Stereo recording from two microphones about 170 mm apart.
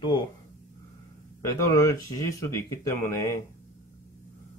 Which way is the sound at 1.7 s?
20° left (ahead or behind).